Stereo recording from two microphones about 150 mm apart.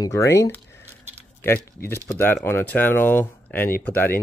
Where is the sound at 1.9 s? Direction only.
15° left (ahead or behind).